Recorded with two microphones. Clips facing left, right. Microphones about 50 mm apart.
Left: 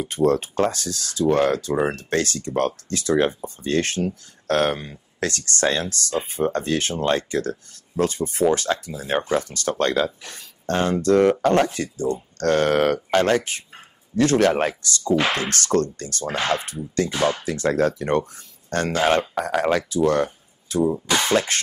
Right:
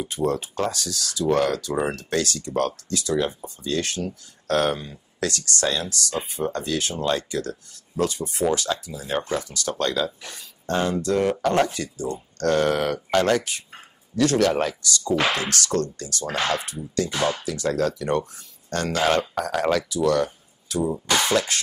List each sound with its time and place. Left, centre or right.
0.0 s speech: left
20.8 s speech: centre